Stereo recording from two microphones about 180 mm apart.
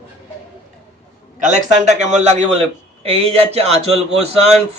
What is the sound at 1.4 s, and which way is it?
Speech, 40° right (ahead or behind).